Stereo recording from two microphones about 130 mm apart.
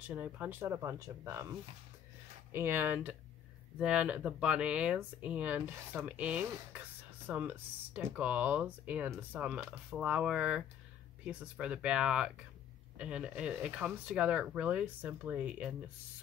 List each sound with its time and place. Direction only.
0.0 s speech: 10° right (ahead or behind)
2.5 s speech: 15° right (ahead or behind)